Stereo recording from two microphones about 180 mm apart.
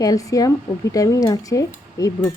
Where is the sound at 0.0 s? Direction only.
20° left (ahead or behind).